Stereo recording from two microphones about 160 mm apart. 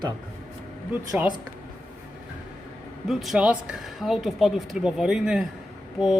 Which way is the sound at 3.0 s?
Centre (ahead or behind).